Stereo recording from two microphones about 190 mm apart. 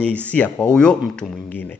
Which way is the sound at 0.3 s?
5° left (ahead or behind).